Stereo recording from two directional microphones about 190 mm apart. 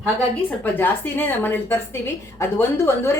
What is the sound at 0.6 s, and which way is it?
A woman's voice, 10° left (ahead or behind).